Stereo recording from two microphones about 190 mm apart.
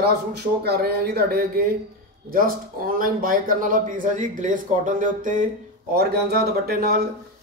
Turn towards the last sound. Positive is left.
turn(degrees=-55)  # may be behind; listen again after turning